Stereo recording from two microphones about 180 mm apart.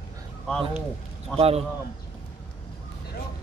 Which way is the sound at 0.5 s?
Centre (ahead or behind).